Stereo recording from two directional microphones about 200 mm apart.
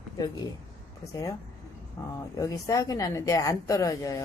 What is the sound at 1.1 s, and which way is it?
Speech, 15° left (ahead or behind).